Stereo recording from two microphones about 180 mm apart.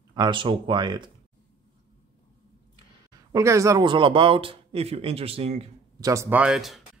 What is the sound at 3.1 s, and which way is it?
Speech, 15° right (ahead or behind).